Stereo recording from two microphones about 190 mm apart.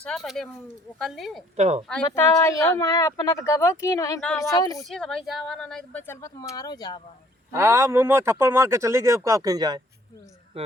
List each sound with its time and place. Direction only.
0.0 s speech: centre (ahead or behind)
1.5 s speech: 35° right (ahead or behind)
1.9 s speech: 15° left (ahead or behind)
4.8 s speech: centre (ahead or behind); by 7.0 s 20° left (ahead or behind)
7.5 s speech: 15° right (ahead or behind)